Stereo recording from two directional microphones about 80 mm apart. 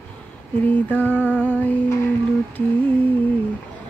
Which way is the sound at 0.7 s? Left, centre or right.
Left.